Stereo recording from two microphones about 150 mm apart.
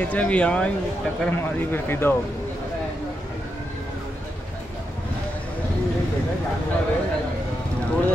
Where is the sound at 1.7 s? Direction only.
15° left (ahead or behind).